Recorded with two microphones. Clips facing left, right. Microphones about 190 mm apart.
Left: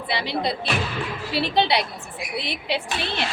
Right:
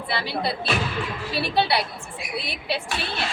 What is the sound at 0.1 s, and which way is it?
A woman's voice, 20° left (ahead or behind).